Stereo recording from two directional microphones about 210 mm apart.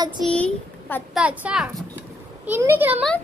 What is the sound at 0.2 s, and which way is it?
Speech, 5° left (ahead or behind).